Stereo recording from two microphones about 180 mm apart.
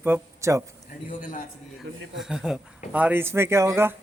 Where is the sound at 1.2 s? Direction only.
45° left (ahead or behind).